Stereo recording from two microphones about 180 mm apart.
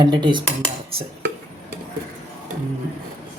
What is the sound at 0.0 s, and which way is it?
Speech, 25° right (ahead or behind).